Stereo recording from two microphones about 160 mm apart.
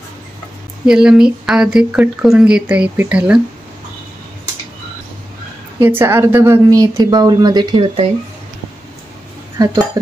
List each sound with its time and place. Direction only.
0.8 s speech: 5° right (ahead or behind)
5.8 s a woman's voice: 15° right (ahead or behind)
7.8 s speech: 40° right (ahead or behind)
9.6 s a woman's voice: 25° right (ahead or behind)